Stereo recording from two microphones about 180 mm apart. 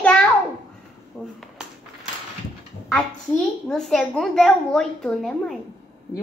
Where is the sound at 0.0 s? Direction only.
5° left (ahead or behind).